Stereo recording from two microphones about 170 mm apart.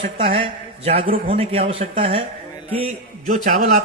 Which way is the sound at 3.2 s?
50° right (ahead or behind).